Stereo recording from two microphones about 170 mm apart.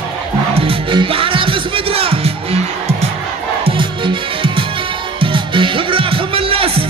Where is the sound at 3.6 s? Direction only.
30° right (ahead or behind).